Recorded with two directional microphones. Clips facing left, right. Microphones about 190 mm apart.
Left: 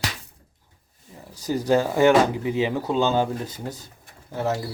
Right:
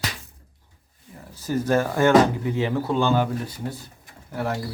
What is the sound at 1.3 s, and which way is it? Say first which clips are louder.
Speech: left 1 dB; 15° left (ahead or behind).